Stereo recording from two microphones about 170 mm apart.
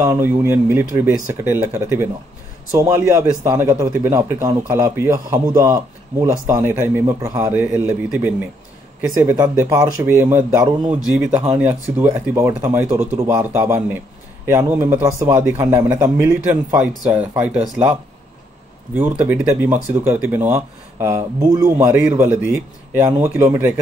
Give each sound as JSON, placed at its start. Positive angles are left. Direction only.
{"t": 0.0, "sound": "speech", "side_deg": -15}
{"t": 9.4, "sound": "speech", "side_deg": -15}
{"t": 11.3, "sound": "speech", "side_deg": -10}
{"t": 18.9, "sound": "speech", "side_deg": -10}